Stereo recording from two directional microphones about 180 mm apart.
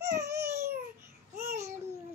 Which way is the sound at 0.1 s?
15° right (ahead or behind).